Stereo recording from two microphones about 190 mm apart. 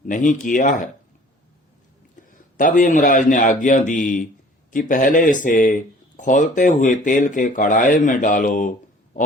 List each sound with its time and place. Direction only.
0.0 s speech: 45° left (ahead or behind)
2.6 s speech: 45° left (ahead or behind)
9.2 s a sound: 45° left (ahead or behind)